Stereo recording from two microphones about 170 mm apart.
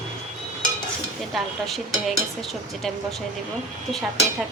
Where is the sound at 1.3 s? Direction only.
Centre (ahead or behind).